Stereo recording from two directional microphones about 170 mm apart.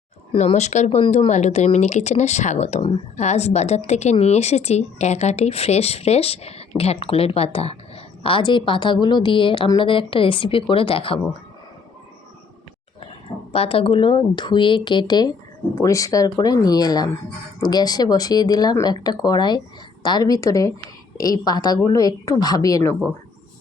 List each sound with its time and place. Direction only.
0.3 s speech: 40° left (ahead or behind)
13.5 s speech: 35° left (ahead or behind); by 23.0 s 20° left (ahead or behind)